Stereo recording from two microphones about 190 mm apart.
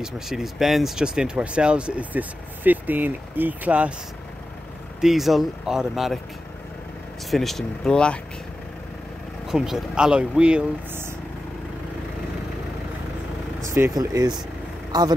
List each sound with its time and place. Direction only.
0.0 s speech: centre (ahead or behind)
5.0 s speech: centre (ahead or behind)
7.2 s speech: centre (ahead or behind)
9.5 s speech: centre (ahead or behind)
13.6 s speech: 15° right (ahead or behind)